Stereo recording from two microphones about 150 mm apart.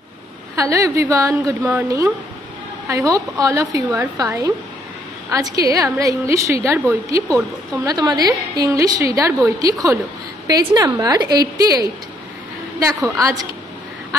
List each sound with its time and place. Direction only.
0.6 s a woman's voice: 20° right (ahead or behind)